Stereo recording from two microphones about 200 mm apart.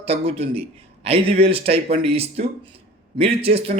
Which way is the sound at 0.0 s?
30° right (ahead or behind).